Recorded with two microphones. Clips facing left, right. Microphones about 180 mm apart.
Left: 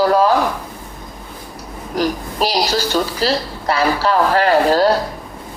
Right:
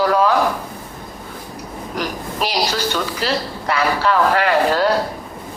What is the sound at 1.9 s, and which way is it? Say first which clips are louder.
A woman's voice: left 5 dB; 35° left (ahead or behind).